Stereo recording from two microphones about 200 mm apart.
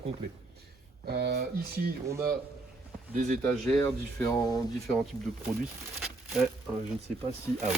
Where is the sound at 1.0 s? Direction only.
55° right (ahead or behind).